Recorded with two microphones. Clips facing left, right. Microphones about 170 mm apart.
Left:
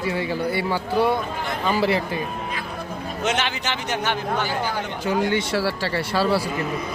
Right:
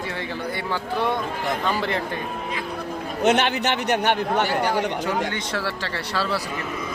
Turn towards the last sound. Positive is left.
turn(degrees=10)  # may be behind; listen again after turning